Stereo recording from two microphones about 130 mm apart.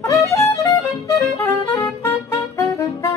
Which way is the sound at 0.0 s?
25° left (ahead or behind).